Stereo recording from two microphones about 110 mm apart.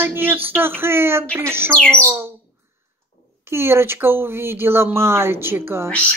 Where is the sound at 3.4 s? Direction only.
20° right (ahead or behind).